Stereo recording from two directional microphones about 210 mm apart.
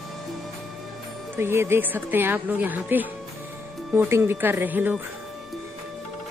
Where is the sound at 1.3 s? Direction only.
10° right (ahead or behind).